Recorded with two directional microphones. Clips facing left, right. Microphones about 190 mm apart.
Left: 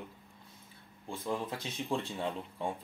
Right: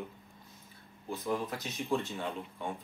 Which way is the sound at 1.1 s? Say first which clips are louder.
Right 2 dB; 25° left (ahead or behind).